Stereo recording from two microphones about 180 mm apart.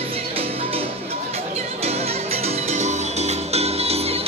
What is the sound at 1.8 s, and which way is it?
Music, 35° right (ahead or behind).